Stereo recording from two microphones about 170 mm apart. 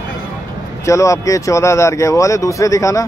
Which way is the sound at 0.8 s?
15° left (ahead or behind).